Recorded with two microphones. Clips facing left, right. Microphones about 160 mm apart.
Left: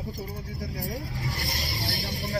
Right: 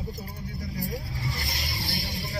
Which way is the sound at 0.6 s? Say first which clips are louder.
Right 1 dB; 40° left (ahead or behind).